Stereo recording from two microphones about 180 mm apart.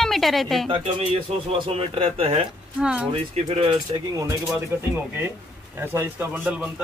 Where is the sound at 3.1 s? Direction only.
35° right (ahead or behind).